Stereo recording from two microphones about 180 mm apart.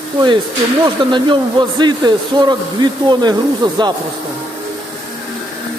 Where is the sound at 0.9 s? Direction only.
25° right (ahead or behind).